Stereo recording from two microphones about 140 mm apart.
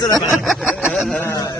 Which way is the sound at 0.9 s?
Centre (ahead or behind).